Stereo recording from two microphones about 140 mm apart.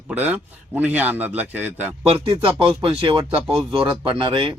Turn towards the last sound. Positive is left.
turn(degrees=-40)  # may be behind; listen again after turning